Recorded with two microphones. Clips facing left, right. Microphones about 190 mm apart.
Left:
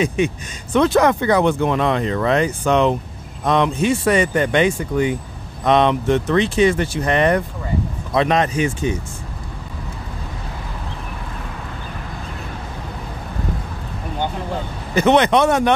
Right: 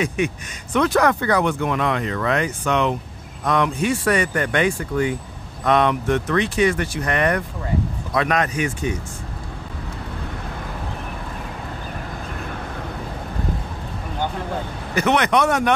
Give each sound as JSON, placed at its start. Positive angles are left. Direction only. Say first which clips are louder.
{"t": 0.0, "sound": "speech", "louder": "left 3 dB", "side_deg": 25}
{"t": 15.0, "sound": "speech", "louder": "left 4 dB", "side_deg": 25}